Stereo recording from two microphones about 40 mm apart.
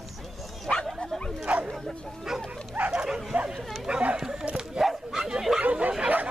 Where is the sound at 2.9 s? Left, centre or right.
Centre.